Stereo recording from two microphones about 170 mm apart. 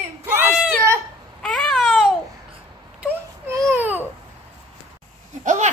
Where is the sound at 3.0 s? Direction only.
15° right (ahead or behind).